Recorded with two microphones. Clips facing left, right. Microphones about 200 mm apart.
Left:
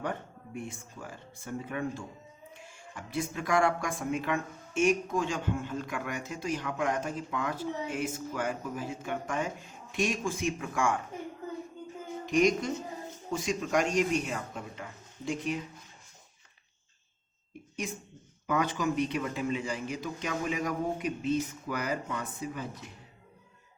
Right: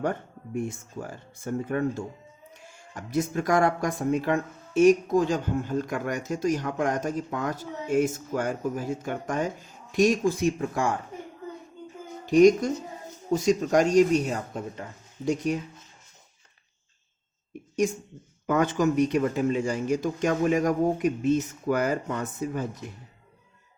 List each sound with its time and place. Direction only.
0.0 s speech: 45° right (ahead or behind)
12.2 s speech: 35° right (ahead or behind)
17.8 s speech: 45° right (ahead or behind)